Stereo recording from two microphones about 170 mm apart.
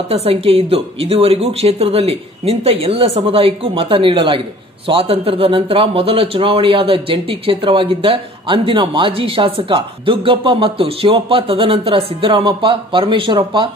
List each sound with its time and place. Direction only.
0.1 s a man's voice: 35° right (ahead or behind)